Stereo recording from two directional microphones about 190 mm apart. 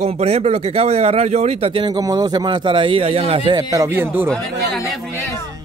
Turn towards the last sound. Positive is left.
turn(degrees=0)  # may be behind; listen again after turning